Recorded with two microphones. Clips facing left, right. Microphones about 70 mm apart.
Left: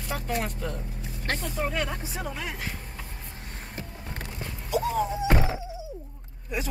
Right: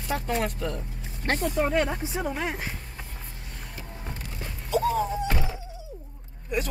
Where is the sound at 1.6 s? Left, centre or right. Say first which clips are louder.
Right 4 dB; centre.